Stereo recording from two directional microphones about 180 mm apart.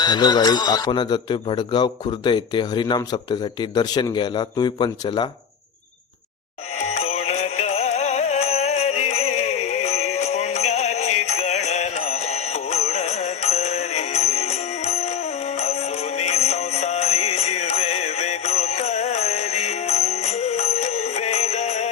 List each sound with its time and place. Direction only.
0.0 s a man's voice: 20° left (ahead or behind)
6.7 s music: 35° left (ahead or behind)